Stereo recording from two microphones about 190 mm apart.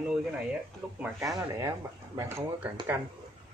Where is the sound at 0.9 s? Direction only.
5° right (ahead or behind).